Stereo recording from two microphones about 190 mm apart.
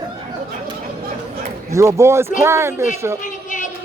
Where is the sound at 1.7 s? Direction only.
15° right (ahead or behind).